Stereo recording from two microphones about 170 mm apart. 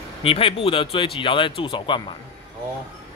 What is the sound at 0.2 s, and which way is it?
Speech, 35° left (ahead or behind).